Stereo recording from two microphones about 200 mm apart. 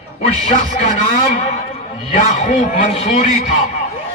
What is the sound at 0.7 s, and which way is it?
A man's voice, 35° left (ahead or behind).